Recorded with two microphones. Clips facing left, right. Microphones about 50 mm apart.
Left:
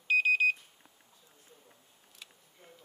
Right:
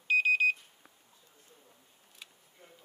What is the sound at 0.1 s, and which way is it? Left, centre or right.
Alarm, centre.